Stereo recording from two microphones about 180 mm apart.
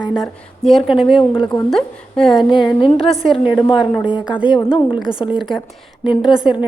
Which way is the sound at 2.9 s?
35° left (ahead or behind).